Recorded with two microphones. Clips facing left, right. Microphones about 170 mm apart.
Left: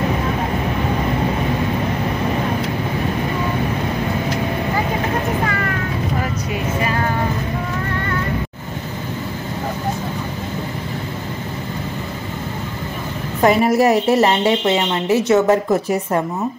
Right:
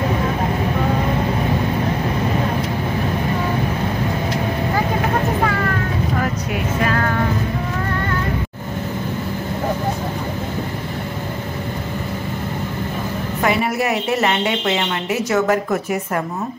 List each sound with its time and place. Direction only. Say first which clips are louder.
13.4 s a woman's voice: left 6 dB; 35° left (ahead or behind)